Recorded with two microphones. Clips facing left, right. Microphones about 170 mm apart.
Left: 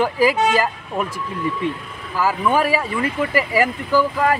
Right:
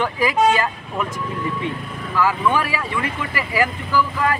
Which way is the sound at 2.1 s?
35° left (ahead or behind).